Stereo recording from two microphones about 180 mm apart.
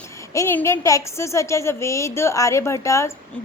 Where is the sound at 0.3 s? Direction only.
15° left (ahead or behind).